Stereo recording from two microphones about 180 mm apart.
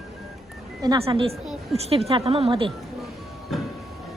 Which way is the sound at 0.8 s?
25° right (ahead or behind).